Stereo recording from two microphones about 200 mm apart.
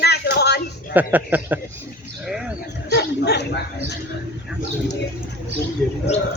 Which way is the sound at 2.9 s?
55° left (ahead or behind).